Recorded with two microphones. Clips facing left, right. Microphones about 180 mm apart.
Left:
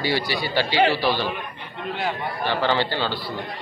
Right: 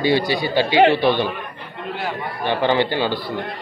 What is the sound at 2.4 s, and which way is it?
Speech, 15° right (ahead or behind).